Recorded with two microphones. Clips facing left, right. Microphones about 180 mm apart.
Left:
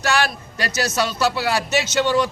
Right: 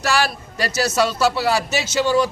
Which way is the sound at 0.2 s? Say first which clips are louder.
Right 1 dB; centre (ahead or behind).